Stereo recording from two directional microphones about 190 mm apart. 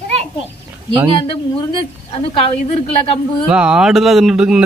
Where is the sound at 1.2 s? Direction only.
30° left (ahead or behind).